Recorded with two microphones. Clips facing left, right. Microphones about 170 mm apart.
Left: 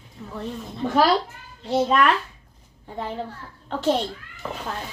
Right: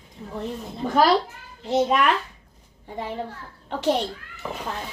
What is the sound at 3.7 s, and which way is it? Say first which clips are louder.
Speech: even; 15° right (ahead or behind).